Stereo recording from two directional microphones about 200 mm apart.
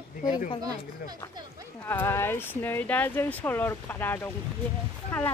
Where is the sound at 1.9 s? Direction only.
10° left (ahead or behind).